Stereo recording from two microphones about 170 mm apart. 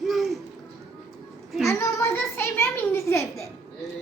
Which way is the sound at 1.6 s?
15° left (ahead or behind).